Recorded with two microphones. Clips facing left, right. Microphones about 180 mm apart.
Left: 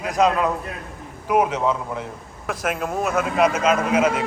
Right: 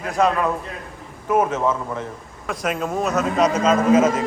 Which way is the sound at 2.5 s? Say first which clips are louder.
Right 1 dB; centre (ahead or behind).